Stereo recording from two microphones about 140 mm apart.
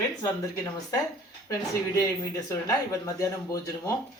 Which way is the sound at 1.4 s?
25° left (ahead or behind).